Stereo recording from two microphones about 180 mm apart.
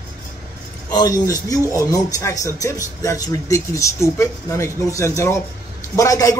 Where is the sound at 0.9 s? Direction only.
20° left (ahead or behind).